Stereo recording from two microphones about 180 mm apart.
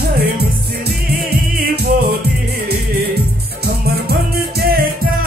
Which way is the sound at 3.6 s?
60° right (ahead or behind).